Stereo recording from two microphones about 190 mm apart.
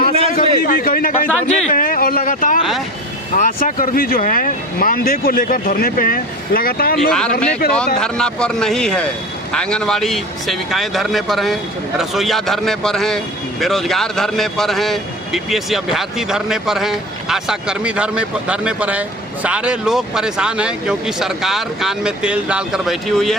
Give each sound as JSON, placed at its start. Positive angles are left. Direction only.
{"t": 0.6, "sound": "a sound", "side_deg": 50}
{"t": 3.3, "sound": "speech", "side_deg": 45}
{"t": 7.1, "sound": "a man's voice", "side_deg": 5}